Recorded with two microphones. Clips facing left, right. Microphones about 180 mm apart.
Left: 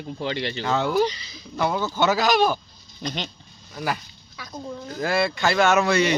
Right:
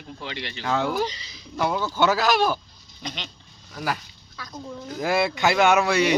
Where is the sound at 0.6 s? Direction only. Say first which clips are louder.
Left 2 dB; 10° right (ahead or behind).